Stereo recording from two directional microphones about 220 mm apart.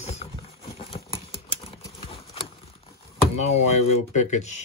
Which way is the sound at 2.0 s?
25° left (ahead or behind).